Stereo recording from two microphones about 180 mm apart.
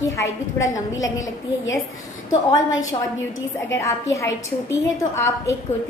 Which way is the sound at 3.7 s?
15° left (ahead or behind).